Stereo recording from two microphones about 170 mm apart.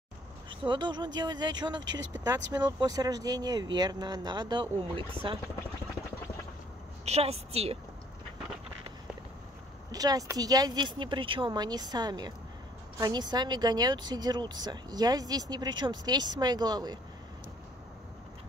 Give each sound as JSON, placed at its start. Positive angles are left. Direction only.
{"t": 0.5, "sound": "speech", "side_deg": -25}
{"t": 7.1, "sound": "a woman's voice", "side_deg": -35}
{"t": 9.8, "sound": "speech", "side_deg": -20}